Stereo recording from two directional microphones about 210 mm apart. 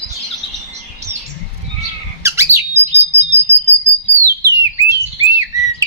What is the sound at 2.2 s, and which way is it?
Bird, 15° right (ahead or behind).